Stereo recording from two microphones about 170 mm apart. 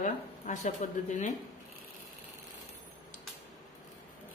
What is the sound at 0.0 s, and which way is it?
A woman's voice, 45° left (ahead or behind).